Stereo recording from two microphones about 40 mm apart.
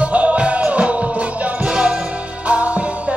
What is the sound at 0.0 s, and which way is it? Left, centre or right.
Music, right.